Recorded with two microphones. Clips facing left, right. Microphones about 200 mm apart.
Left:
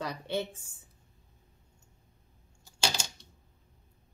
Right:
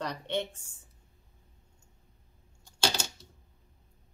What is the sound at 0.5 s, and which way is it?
Speech, 90° left.